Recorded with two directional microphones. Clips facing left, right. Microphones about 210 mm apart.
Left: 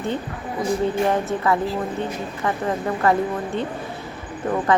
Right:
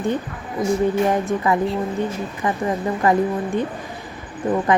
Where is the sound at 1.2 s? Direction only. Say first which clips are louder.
Right 1 dB; 15° right (ahead or behind).